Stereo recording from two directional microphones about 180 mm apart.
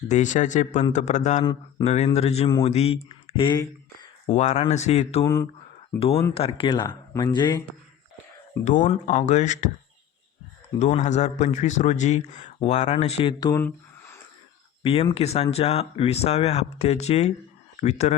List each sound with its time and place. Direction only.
0.1 s a man's voice: 45° left (ahead or behind); by 3.7 s 25° left (ahead or behind)
4.3 s a man's voice: 40° left (ahead or behind)
5.2 s speech: 20° left (ahead or behind)
6.0 s a man's voice: 35° left (ahead or behind)
8.6 s a man's voice: 45° left (ahead or behind)
10.8 s a man's voice: 40° left (ahead or behind)
13.4 s a sound: 15° left (ahead or behind)
15.1 s a man's voice: 35° left (ahead or behind)